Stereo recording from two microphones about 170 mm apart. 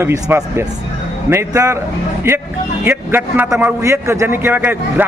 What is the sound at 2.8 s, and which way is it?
Speech, 10° right (ahead or behind).